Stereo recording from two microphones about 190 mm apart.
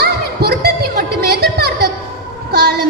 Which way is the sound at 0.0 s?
55° right (ahead or behind).